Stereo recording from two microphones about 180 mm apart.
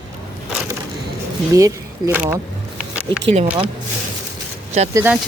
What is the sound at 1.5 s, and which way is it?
Speech, 15° right (ahead or behind).